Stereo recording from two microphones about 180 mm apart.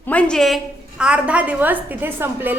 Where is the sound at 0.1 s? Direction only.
5° left (ahead or behind).